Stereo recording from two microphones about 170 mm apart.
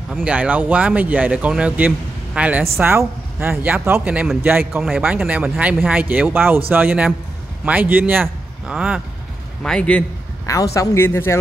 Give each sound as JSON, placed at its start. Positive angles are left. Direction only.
{"t": 0.1, "sound": "speech", "side_deg": -5}
{"t": 9.6, "sound": "speech", "side_deg": 5}
{"t": 10.4, "sound": "speech", "side_deg": 20}